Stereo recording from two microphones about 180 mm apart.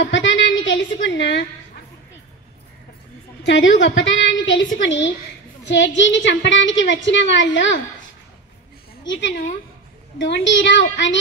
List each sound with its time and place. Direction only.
0.0 s a woman's voice: 90° left
3.4 s a woman's voice: 90° left
9.0 s a woman's voice: 90° left